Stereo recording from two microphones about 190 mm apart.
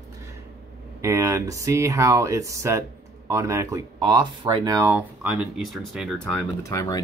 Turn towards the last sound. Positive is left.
turn(degrees=20)  # may be behind; listen again after turning